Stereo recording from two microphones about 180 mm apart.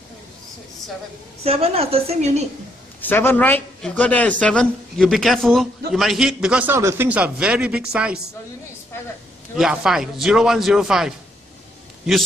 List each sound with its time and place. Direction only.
1.4 s a woman's voice: 35° right (ahead or behind)
3.0 s speech: 10° left (ahead or behind); by 8.2 s 5° right (ahead or behind)
9.6 s speech: 5° right (ahead or behind)